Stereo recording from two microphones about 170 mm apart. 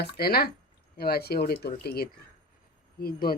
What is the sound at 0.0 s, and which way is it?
Speech, 65° left (ahead or behind).